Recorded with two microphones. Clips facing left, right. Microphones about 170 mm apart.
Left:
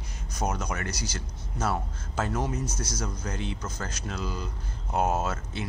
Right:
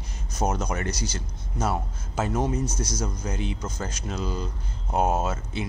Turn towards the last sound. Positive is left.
turn(degrees=-15)  # may be behind; listen again after turning